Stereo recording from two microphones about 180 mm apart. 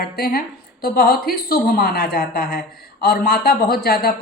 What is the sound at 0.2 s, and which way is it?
A woman's voice, 55° left (ahead or behind).